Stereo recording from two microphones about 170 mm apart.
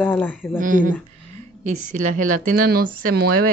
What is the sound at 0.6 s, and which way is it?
Speech, 50° right (ahead or behind).